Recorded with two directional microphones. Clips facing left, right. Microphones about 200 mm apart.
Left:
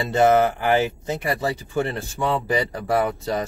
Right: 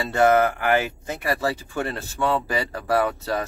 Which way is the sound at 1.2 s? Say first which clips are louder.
Right 2 dB; 20° left (ahead or behind).